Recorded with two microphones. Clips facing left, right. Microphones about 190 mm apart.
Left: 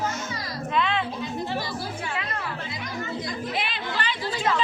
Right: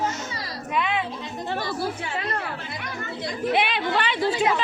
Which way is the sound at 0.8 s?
10° right (ahead or behind).